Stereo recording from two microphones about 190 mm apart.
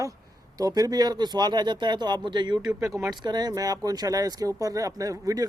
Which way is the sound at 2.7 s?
10° right (ahead or behind).